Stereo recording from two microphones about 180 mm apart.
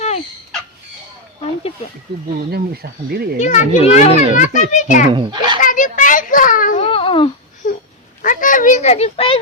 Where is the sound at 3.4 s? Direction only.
40° left (ahead or behind).